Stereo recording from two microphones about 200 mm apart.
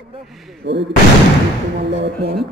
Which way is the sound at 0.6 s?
60° right (ahead or behind).